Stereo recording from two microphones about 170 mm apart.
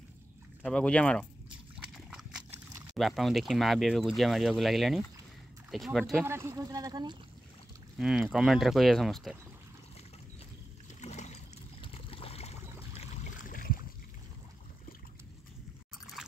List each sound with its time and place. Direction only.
0.7 s speech: 5° left (ahead or behind)
1.8 s liquid: 5° right (ahead or behind)
3.0 s speech: centre (ahead or behind)
6.2 s speech: 15° right (ahead or behind)
8.0 s speech: centre (ahead or behind)
11.0 s a sound: 45° left (ahead or behind)
12.9 s a sound: 50° left (ahead or behind)
16.2 s pour: centre (ahead or behind)